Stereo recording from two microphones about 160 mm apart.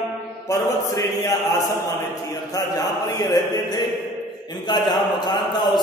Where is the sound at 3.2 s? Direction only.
25° left (ahead or behind).